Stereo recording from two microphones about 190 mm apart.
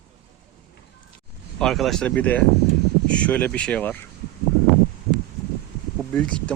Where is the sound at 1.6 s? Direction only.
Centre (ahead or behind).